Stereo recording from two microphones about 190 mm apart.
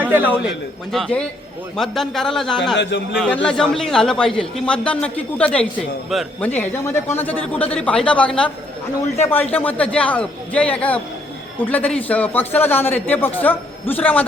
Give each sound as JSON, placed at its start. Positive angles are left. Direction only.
{"t": 0.0, "sound": "a man's voice", "side_deg": -10}
{"t": 0.4, "sound": "a man's voice", "side_deg": 0}
{"t": 2.7, "sound": "a man's voice", "side_deg": 70}
{"t": 3.2, "sound": "a man's voice", "side_deg": 5}